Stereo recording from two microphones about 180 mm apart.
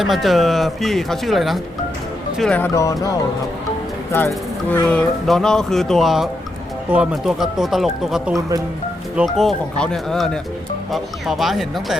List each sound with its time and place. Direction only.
0.0 s speech: centre (ahead or behind)
2.7 s speech: 20° left (ahead or behind)
4.7 s speech: 10° left (ahead or behind)